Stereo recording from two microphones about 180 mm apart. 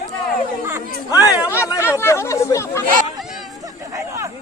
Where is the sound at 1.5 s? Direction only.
15° left (ahead or behind).